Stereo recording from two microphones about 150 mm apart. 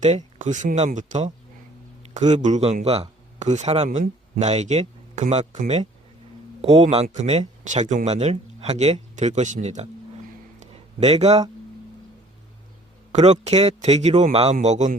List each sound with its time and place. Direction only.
0.0 s speech: 50° right (ahead or behind)
3.8 s speech: 60° right (ahead or behind)
6.6 s speech: 45° right (ahead or behind)
10.6 s a sound: 45° right (ahead or behind)
13.1 s speech: 50° right (ahead or behind)